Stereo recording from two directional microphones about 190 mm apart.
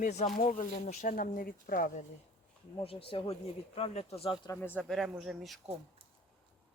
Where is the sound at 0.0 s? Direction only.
35° left (ahead or behind).